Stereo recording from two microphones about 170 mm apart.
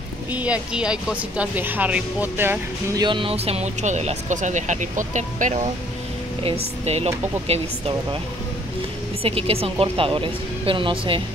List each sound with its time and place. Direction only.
0.3 s speech: 10° right (ahead or behind); by 8.2 s 35° right (ahead or behind)
9.2 s speech: 35° right (ahead or behind)